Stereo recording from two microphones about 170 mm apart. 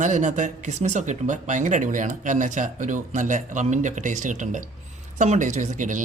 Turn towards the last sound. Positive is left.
turn(degrees=-45)  # may be behind; listen again after turning